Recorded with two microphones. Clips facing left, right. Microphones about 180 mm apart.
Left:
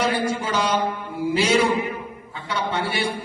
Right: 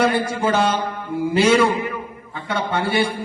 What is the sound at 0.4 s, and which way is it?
A man's voice, 50° right (ahead or behind).